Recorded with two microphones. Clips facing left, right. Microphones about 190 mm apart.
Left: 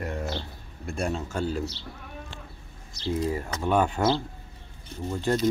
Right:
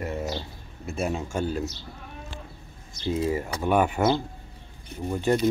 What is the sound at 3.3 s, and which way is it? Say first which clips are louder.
Speech: right 1 dB; 15° right (ahead or behind).